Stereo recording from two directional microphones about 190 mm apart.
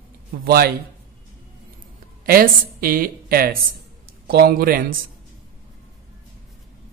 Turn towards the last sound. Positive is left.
turn(degrees=-50)  # may be behind; listen again after turning